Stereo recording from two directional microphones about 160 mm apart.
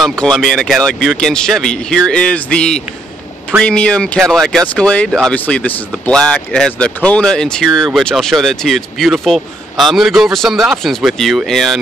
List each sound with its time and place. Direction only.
0.0 s speech: 5° left (ahead or behind)